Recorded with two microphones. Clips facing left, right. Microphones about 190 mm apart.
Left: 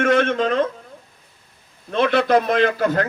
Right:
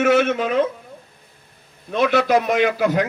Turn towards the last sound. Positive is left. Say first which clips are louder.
# even
turn(degrees=-10)  # may be behind; listen again after turning